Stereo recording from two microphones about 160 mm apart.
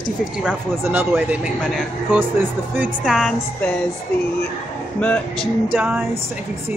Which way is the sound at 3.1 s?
Centre (ahead or behind).